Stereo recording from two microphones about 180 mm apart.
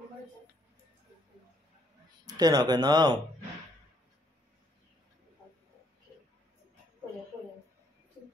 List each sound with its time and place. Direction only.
2.2 s speech: 20° right (ahead or behind)